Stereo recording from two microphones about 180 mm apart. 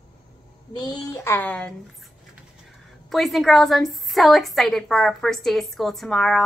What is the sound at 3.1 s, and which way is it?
A woman's voice, centre (ahead or behind).